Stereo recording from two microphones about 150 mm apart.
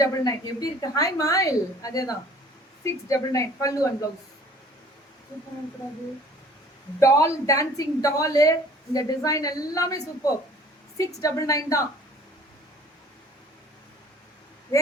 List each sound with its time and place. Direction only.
0.0 s a woman's voice: 25° left (ahead or behind)
7.0 s a woman's voice: 20° left (ahead or behind)